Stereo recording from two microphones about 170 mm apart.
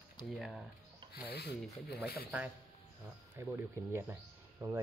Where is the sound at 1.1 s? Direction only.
70° left (ahead or behind).